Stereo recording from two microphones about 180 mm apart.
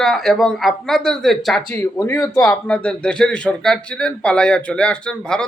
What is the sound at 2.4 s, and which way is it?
Speech, 5° left (ahead or behind).